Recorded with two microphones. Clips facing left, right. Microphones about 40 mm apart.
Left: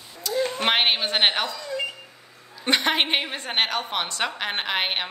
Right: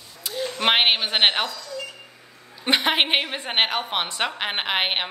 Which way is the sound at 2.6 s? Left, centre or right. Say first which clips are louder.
Right 1 dB; centre.